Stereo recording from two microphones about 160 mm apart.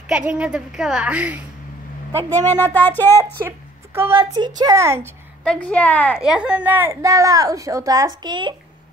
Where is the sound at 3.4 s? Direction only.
15° right (ahead or behind).